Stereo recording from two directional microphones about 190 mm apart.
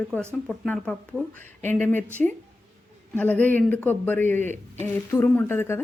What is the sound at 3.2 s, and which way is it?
A man's voice, 10° left (ahead or behind).